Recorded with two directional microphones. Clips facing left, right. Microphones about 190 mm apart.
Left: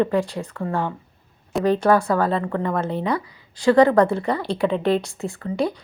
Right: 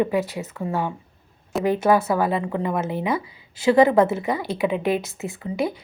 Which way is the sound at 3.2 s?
25° right (ahead or behind).